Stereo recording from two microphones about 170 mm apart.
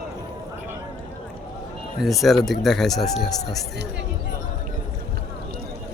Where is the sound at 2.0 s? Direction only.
Centre (ahead or behind).